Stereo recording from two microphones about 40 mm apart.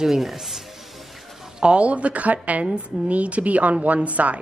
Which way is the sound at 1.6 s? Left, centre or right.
Right.